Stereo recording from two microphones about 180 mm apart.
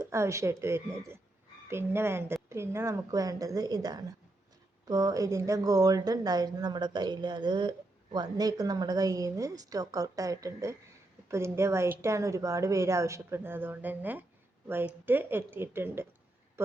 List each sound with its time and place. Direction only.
0.0 s a woman's voice: 15° right (ahead or behind)